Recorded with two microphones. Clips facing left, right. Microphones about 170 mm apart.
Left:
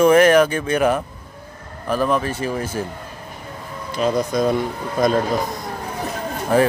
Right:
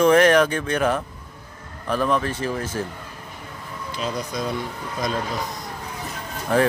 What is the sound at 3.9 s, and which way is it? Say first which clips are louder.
Speech: left 9 dB; 45° left (ahead or behind).